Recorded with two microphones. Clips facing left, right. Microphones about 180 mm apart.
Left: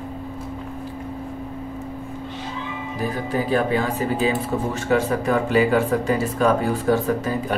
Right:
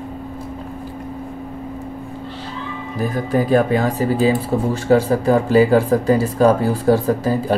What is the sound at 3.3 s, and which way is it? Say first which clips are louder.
Speech: right 6 dB; 40° right (ahead or behind).